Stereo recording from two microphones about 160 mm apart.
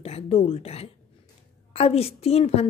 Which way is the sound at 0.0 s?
40° left (ahead or behind).